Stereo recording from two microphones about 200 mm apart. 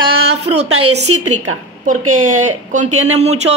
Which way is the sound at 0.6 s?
90° right.